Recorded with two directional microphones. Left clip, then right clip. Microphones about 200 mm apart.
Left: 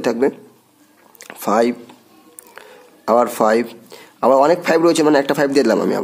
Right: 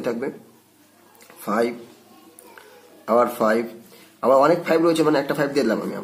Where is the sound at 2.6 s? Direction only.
50° left (ahead or behind).